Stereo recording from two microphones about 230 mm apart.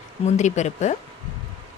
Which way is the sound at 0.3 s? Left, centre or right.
Left.